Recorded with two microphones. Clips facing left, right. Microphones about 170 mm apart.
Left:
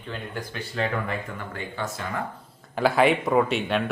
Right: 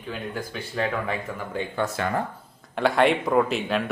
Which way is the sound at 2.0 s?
85° right.